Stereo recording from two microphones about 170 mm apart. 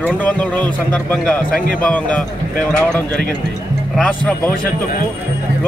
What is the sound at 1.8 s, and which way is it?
Speech, 5° left (ahead or behind).